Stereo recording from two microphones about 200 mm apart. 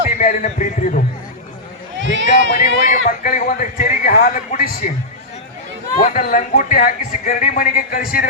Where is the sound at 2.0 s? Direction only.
65° right (ahead or behind).